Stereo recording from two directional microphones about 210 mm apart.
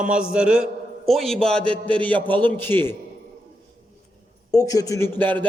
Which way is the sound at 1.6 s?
25° right (ahead or behind).